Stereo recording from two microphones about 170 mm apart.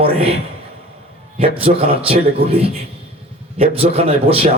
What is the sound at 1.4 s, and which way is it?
A man's voice, 35° right (ahead or behind).